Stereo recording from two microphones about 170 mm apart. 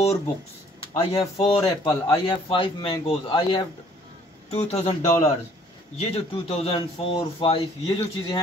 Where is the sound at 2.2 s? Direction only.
30° left (ahead or behind).